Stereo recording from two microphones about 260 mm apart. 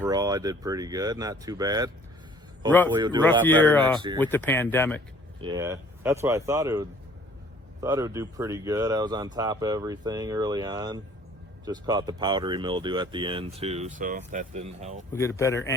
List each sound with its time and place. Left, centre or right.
0.0 s speech: centre
2.9 s speech: centre
3.4 s speech: centre
5.4 s speech: centre
15.1 s speech: centre